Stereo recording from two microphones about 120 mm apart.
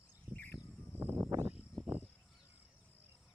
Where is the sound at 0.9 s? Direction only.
20° right (ahead or behind).